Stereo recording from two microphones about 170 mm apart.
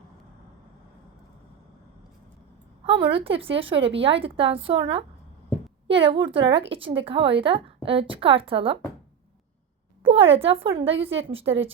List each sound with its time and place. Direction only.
2.8 s a woman's voice: 30° right (ahead or behind)
10.0 s a woman's voice: 35° right (ahead or behind)